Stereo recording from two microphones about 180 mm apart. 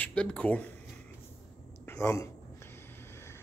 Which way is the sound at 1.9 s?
15° left (ahead or behind).